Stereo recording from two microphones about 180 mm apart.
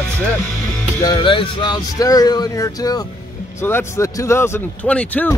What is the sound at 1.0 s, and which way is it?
Speech, 20° left (ahead or behind).